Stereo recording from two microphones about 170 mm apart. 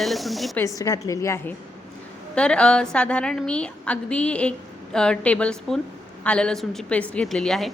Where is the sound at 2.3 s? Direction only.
5° left (ahead or behind).